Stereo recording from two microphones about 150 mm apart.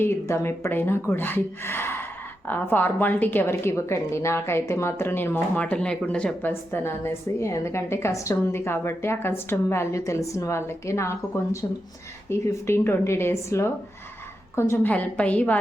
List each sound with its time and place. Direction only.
0.0 s a woman's voice: 15° left (ahead or behind)